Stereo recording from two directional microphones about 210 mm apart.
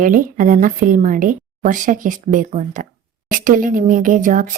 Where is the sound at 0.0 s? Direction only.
40° right (ahead or behind).